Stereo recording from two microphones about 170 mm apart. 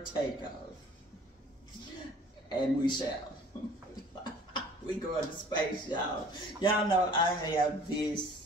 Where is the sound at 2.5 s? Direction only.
25° left (ahead or behind).